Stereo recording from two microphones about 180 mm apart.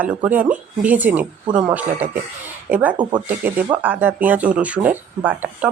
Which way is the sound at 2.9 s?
25° right (ahead or behind).